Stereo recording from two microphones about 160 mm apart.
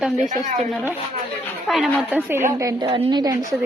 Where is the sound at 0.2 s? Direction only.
55° right (ahead or behind).